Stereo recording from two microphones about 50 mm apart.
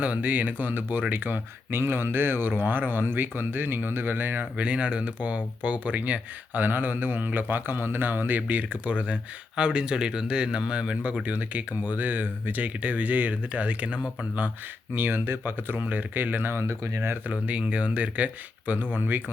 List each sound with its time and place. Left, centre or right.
0.0 s speech: right
14.9 s speech: right
16.6 s speech: right
17.4 s speech: right